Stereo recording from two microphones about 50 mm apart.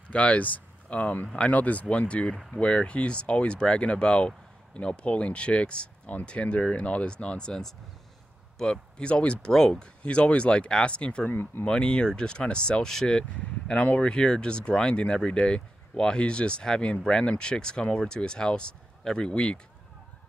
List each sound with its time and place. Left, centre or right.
0.1 s speech: left
11.2 s speech: left
11.6 s speech: centre
13.7 s speech: left